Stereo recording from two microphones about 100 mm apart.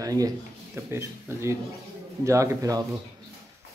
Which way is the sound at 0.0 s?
35° right (ahead or behind).